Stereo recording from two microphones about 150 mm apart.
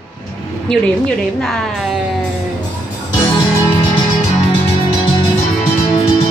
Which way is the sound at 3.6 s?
30° left (ahead or behind).